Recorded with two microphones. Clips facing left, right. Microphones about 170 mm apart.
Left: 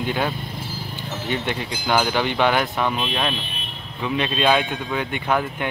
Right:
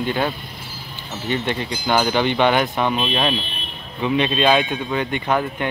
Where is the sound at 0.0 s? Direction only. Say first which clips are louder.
Right 2 dB; 10° left (ahead or behind).